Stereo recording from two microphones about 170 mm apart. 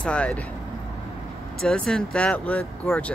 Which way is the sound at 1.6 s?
5° left (ahead or behind).